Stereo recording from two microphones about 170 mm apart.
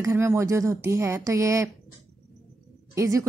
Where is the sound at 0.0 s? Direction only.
15° right (ahead or behind).